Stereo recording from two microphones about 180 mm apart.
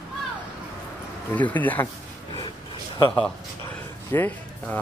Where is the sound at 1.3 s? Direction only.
10° left (ahead or behind).